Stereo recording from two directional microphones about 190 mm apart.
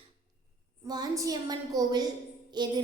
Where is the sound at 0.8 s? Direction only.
20° right (ahead or behind).